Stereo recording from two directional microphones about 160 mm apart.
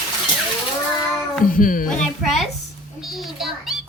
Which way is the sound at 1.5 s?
60° left (ahead or behind).